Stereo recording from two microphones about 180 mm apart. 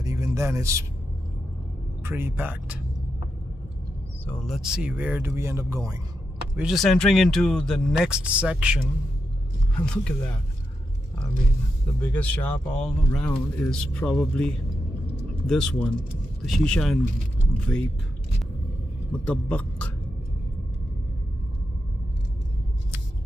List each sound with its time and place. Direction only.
0.0 s a sound: 15° right (ahead or behind)
2.0 s speech: 10° right (ahead or behind)
4.3 s speech: centre (ahead or behind); by 5.9 s 20° right (ahead or behind)
6.5 s speech: centre (ahead or behind)
9.8 s speech: 5° left (ahead or behind)
12.0 s speech: 10° left (ahead or behind)
19.2 s speech: 5° left (ahead or behind)